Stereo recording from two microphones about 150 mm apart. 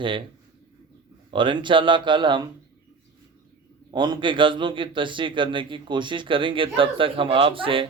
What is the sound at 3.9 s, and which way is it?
A man's voice, 30° right (ahead or behind).